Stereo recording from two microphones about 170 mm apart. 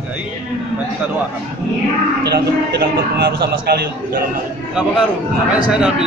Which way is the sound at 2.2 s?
70° right (ahead or behind).